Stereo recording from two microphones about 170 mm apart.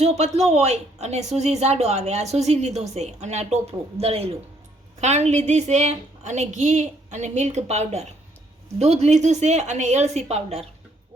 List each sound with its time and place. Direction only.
0.0 s a woman's voice: 40° right (ahead or behind)